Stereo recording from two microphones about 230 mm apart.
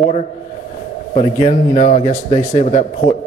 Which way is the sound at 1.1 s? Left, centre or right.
Left.